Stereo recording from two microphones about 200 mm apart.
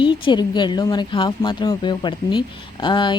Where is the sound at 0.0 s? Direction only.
25° left (ahead or behind).